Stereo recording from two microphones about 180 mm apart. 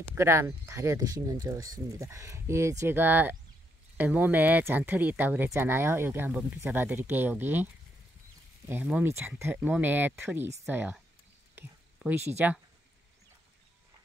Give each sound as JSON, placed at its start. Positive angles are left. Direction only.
{"t": 0.1, "sound": "speech", "side_deg": -15}
{"t": 8.6, "sound": "speech", "side_deg": -10}
{"t": 11.5, "sound": "whispering", "side_deg": -10}